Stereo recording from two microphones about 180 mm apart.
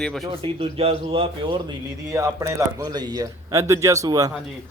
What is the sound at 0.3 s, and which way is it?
A man's voice, 30° right (ahead or behind).